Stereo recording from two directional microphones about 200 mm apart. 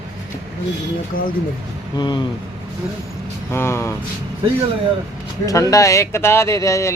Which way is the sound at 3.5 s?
10° left (ahead or behind).